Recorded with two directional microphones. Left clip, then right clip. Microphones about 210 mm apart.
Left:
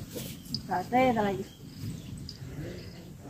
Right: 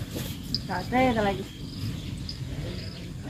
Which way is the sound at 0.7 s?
45° left (ahead or behind).